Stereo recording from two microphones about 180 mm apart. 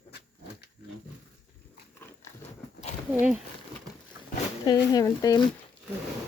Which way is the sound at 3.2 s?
5° right (ahead or behind).